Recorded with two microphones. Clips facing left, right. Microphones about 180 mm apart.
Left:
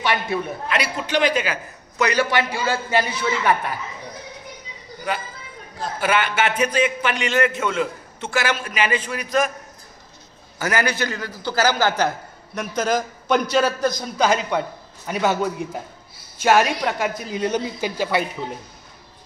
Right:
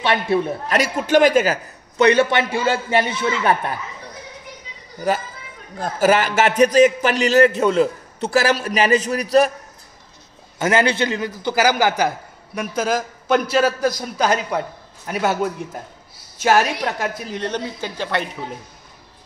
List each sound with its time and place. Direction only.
0.0 s a man's voice: 25° right (ahead or behind)
0.7 s a man's voice: 45° right (ahead or behind)
2.0 s a man's voice: 25° right (ahead or behind)
5.8 s a man's voice: 40° right (ahead or behind)
10.6 s a man's voice: 25° right (ahead or behind); by 18.2 s 10° left (ahead or behind)